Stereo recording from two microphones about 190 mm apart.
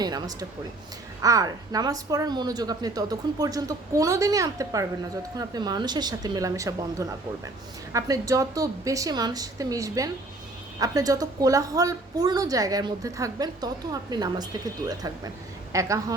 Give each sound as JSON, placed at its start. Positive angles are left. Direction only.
{"t": 0.0, "sound": "a woman's voice", "side_deg": -20}